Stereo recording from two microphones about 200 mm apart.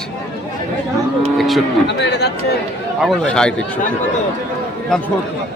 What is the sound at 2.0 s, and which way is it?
Speech, 55° left (ahead or behind).